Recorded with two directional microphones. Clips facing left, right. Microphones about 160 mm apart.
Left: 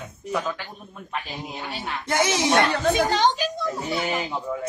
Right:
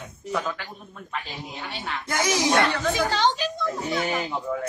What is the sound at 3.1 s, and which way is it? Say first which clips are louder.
Speech: left 2 dB; 15° left (ahead or behind).